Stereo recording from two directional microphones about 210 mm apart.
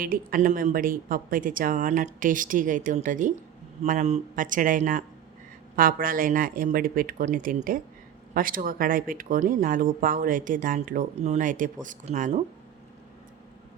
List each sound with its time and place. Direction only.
0.0 s speech: 40° right (ahead or behind)